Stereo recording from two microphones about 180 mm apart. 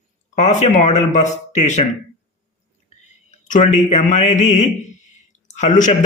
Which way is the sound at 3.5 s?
40° left (ahead or behind).